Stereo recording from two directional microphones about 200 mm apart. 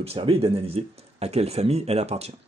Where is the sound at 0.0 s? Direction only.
30° right (ahead or behind).